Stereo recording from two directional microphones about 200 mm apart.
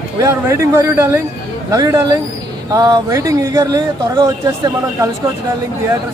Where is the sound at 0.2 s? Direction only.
15° right (ahead or behind).